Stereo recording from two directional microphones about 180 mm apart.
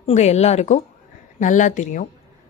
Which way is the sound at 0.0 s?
35° left (ahead or behind).